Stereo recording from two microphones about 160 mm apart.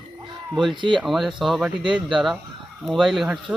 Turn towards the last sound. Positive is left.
turn(degrees=0)  # may be behind; listen again after turning